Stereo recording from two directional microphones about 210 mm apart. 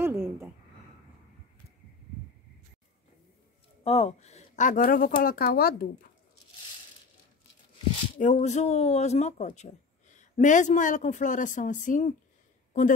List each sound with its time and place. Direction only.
0.0 s a sound: 10° right (ahead or behind)
3.8 s speech: 30° left (ahead or behind); by 6.0 s 45° left (ahead or behind)
8.2 s speech: 35° left (ahead or behind)